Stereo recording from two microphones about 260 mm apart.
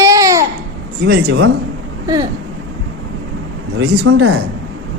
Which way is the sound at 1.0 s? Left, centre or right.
Right.